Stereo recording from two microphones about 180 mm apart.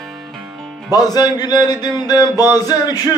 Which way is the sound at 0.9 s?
20° left (ahead or behind).